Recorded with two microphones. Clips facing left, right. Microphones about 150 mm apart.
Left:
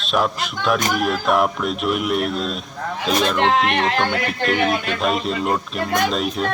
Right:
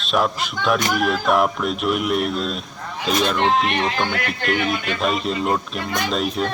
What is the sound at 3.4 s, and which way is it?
Speech, 70° left (ahead or behind).